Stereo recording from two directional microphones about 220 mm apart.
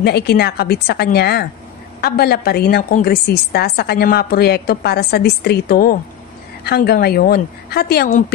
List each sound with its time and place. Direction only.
0.0 s a woman's voice: 45° left (ahead or behind)